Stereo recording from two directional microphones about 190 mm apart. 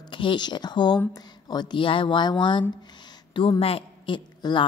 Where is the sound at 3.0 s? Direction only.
25° left (ahead or behind).